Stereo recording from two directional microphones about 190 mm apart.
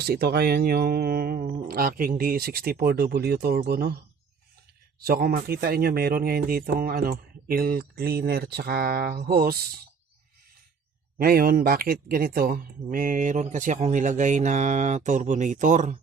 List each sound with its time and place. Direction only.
0.0 s speech: 55° right (ahead or behind)
5.0 s speech: 50° right (ahead or behind)
11.2 s speech: 50° right (ahead or behind)